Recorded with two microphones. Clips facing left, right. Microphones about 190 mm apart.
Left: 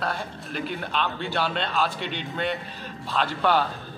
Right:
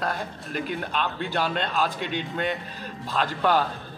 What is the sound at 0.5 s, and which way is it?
A man's voice, 45° right (ahead or behind).